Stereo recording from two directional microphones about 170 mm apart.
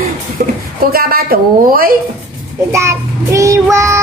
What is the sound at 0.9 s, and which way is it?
A woman's voice, 60° right (ahead or behind).